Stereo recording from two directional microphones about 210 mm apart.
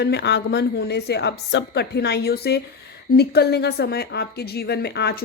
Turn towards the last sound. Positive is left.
turn(degrees=50)  # may be behind; listen again after turning